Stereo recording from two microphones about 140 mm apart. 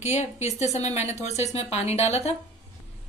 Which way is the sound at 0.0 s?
55° left (ahead or behind).